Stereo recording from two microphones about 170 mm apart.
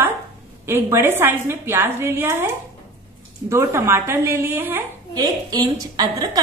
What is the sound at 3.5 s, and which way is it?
A woman's voice, 15° right (ahead or behind).